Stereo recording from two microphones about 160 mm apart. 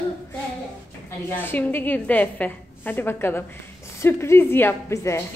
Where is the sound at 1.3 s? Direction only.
15° left (ahead or behind).